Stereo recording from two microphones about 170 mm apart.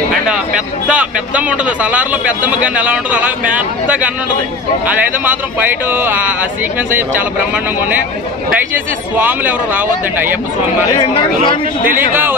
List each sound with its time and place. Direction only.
0.8 s a man's voice: 10° right (ahead or behind)
5.2 s a man's voice: 10° right (ahead or behind)
8.7 s a man's voice: 10° right (ahead or behind)
11.0 s speech: 30° left (ahead or behind)
12.1 s a man's voice: 15° right (ahead or behind)